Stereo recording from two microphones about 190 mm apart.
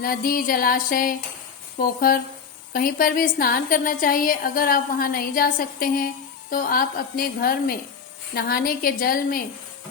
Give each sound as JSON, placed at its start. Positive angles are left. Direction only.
{"t": 0.0, "sound": "a woman's voice", "side_deg": 50}